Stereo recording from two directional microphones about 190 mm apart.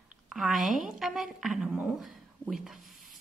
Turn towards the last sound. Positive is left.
turn(degrees=0)  # may be behind; listen again after turning